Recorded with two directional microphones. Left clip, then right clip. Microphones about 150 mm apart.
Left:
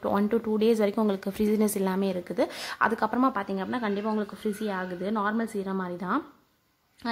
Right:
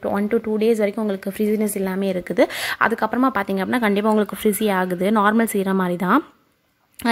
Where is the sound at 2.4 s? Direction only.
25° right (ahead or behind).